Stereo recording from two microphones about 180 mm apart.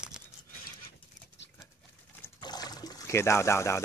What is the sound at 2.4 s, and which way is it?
Trickle, 20° left (ahead or behind).